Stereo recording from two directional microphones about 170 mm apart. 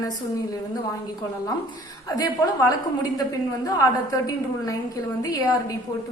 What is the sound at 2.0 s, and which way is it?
A woman's voice, 20° left (ahead or behind).